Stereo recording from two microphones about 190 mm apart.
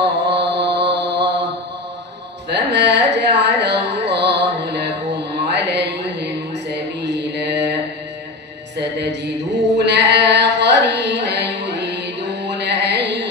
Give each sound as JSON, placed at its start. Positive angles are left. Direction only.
{"t": 0.3, "sound": "mantra", "side_deg": -65}
{"t": 2.5, "sound": "music", "side_deg": -65}
{"t": 8.7, "sound": "a sound", "side_deg": -65}